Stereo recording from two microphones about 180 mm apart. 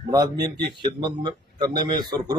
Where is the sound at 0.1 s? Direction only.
20° right (ahead or behind).